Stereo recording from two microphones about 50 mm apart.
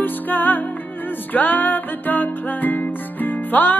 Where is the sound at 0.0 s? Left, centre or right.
Left.